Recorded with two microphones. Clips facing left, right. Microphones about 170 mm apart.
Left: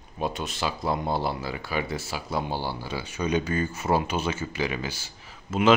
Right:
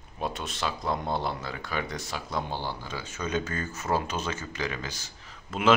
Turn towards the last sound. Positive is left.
turn(degrees=5)  # may be behind; listen again after turning